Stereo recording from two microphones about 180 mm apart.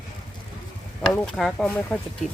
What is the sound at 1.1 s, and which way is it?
Speech, centre (ahead or behind).